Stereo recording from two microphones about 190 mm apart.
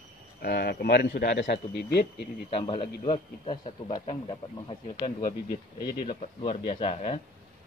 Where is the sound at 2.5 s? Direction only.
25° left (ahead or behind).